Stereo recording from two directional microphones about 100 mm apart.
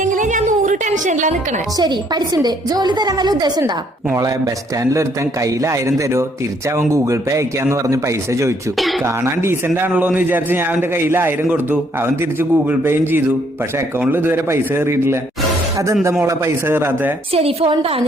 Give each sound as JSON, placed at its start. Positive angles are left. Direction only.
{"t": 1.8, "sound": "a woman's voice", "side_deg": -45}
{"t": 16.2, "sound": "a man's voice", "side_deg": -25}
{"t": 17.3, "sound": "a woman's voice", "side_deg": -80}